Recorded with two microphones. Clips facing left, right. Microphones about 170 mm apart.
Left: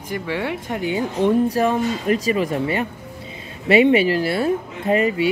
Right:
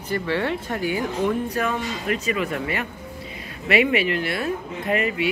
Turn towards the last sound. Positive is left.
turn(degrees=30)  # may be behind; listen again after turning